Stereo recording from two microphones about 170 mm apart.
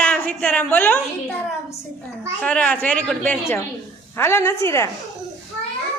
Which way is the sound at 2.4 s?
5° left (ahead or behind).